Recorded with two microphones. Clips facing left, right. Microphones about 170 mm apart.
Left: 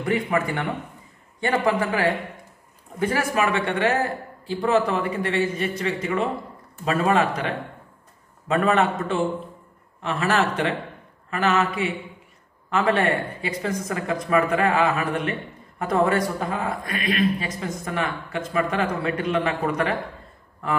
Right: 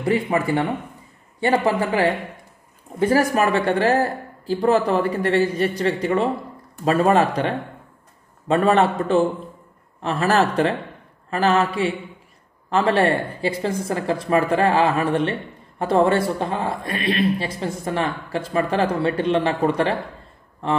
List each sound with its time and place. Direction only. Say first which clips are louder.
0.0 s speech: right 3 dB; 30° right (ahead or behind)
1.7 s speech: right 2 dB; 35° right (ahead or behind)